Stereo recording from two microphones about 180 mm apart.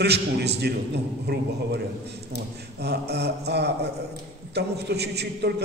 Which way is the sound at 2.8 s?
65° right (ahead or behind).